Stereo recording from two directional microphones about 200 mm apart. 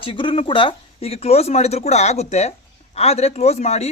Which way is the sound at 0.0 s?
25° left (ahead or behind).